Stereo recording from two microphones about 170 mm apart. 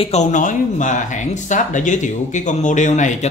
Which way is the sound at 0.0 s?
40° left (ahead or behind).